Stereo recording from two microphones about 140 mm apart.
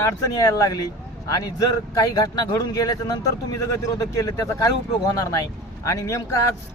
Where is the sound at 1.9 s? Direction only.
25° left (ahead or behind).